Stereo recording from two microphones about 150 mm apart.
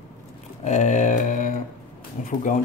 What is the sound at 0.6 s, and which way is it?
Speech, 55° left (ahead or behind).